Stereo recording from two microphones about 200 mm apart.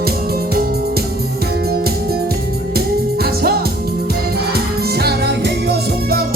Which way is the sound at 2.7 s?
50° right (ahead or behind).